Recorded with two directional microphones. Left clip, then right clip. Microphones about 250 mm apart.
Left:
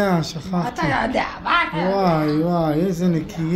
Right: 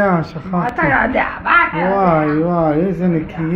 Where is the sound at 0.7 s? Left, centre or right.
Left.